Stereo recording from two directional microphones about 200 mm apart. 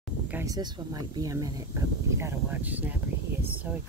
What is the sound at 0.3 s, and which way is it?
Speech, 15° right (ahead or behind).